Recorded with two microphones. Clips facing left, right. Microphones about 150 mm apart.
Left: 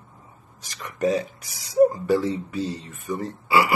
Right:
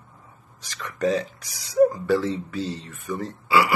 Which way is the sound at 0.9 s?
20° left (ahead or behind).